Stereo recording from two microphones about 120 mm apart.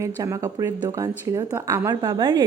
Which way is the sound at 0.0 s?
25° right (ahead or behind).